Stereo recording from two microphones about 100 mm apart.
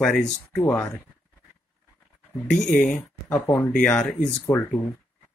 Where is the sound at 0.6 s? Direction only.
20° left (ahead or behind).